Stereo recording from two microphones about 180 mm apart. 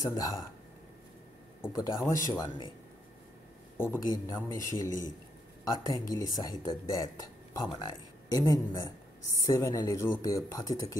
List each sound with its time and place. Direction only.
0.0 s speech: 20° left (ahead or behind)
1.6 s speech: 20° left (ahead or behind)
3.7 s a man's voice: 15° left (ahead or behind)